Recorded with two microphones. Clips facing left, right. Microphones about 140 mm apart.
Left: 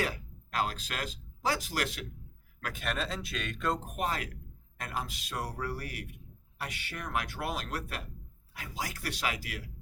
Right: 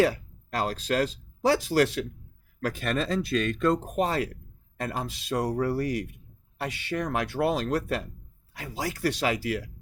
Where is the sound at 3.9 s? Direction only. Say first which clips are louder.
Right 8 dB; 30° right (ahead or behind).